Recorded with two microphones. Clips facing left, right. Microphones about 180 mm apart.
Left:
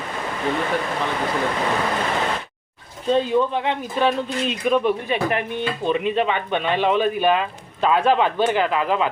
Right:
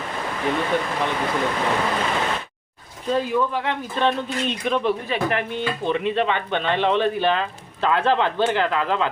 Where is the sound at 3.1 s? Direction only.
25° left (ahead or behind).